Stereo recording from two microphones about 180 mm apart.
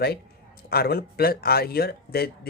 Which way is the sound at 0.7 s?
60° left (ahead or behind).